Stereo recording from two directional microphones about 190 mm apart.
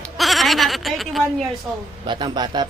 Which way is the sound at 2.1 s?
25° right (ahead or behind).